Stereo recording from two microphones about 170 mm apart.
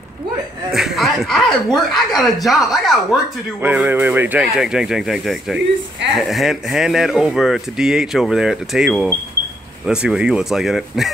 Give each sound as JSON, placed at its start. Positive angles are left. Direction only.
{"t": 0.7, "sound": "speech", "side_deg": 0}
{"t": 3.6, "sound": "speech", "side_deg": -10}